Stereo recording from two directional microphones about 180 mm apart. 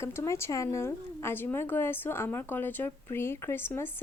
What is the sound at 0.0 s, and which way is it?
Speech, 15° left (ahead or behind).